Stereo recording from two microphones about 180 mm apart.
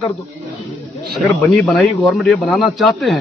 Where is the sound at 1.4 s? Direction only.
Centre (ahead or behind).